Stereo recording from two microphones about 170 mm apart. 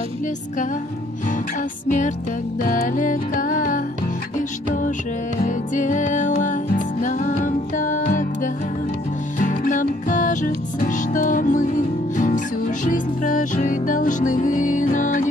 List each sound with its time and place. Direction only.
1.9 s music: 45° left (ahead or behind)
5.4 s music: 45° left (ahead or behind)
9.4 s music: 50° left (ahead or behind)